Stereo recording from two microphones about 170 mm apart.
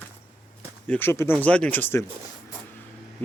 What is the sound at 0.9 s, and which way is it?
A man's voice, 15° left (ahead or behind).